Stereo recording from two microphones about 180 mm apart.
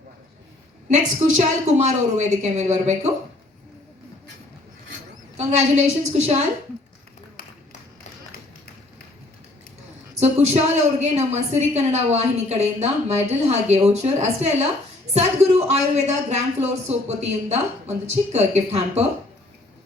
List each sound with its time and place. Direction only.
1.4 s a woman's voice: 40° right (ahead or behind)
5.4 s a woman's voice: 40° right (ahead or behind)
10.2 s a woman's voice: 35° right (ahead or behind)